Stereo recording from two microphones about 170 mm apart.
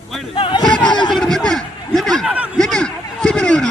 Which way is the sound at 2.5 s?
5° left (ahead or behind).